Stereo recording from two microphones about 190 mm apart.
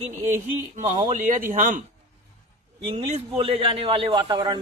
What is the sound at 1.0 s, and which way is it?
Speech, 40° right (ahead or behind).